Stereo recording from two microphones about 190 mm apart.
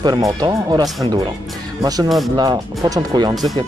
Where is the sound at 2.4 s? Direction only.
20° right (ahead or behind).